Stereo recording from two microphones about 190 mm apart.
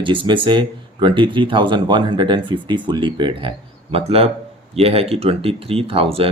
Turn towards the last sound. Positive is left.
turn(degrees=-30)  # may be behind; listen again after turning